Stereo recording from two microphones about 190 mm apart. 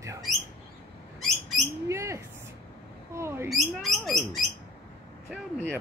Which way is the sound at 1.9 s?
15° right (ahead or behind).